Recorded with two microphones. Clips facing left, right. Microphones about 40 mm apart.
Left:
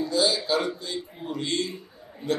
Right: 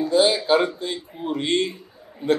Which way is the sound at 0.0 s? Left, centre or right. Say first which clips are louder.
Right 6 dB; right.